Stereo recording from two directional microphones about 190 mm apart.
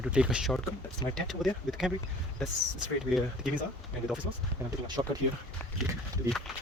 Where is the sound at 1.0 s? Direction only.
25° left (ahead or behind).